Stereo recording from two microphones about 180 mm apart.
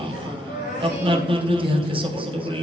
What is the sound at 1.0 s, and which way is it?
A man's voice, 30° right (ahead or behind).